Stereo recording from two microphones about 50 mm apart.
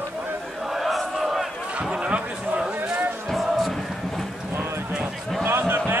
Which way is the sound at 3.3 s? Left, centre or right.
Centre.